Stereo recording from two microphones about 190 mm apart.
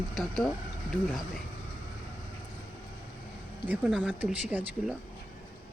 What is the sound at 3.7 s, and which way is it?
Speech, 5° right (ahead or behind).